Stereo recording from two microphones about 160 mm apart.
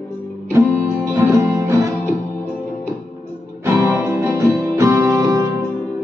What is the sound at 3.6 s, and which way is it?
Music, 20° right (ahead or behind).